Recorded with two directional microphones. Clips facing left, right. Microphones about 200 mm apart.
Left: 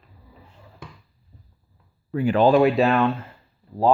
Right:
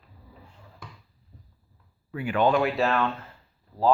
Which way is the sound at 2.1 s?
40° left (ahead or behind).